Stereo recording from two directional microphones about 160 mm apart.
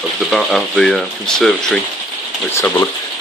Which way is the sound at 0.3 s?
Centre (ahead or behind).